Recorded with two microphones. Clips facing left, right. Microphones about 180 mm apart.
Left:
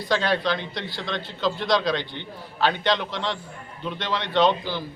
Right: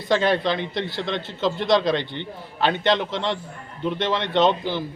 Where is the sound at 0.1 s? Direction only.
20° right (ahead or behind).